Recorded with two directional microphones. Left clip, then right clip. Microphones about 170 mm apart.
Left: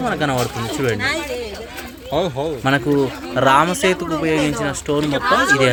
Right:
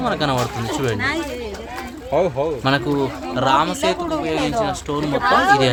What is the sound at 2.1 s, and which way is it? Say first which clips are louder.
Speech: right 2 dB; 55° left (ahead or behind).